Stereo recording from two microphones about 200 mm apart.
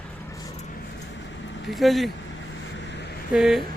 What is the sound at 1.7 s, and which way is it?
Speech, centre (ahead or behind).